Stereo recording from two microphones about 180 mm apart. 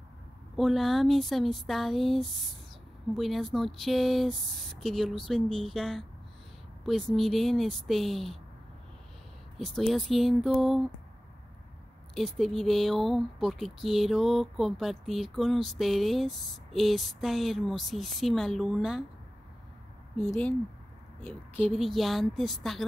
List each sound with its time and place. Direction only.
0.6 s speech: centre (ahead or behind)
9.6 s speech: centre (ahead or behind)
12.2 s speech: centre (ahead or behind)
21.2 s a woman's voice: 10° left (ahead or behind)
21.7 s speech: centre (ahead or behind)